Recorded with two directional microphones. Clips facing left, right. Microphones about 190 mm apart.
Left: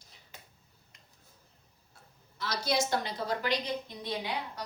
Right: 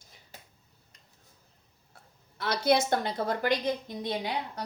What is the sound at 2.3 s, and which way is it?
A woman's voice, 60° right (ahead or behind).